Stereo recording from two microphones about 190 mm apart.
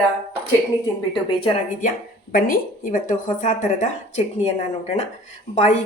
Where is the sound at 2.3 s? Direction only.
45° left (ahead or behind).